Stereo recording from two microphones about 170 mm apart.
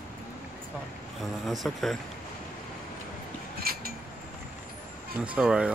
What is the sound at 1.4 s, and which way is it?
Speech, centre (ahead or behind).